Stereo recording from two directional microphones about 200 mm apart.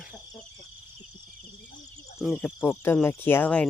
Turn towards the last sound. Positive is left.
turn(degrees=10)  # may be behind; listen again after turning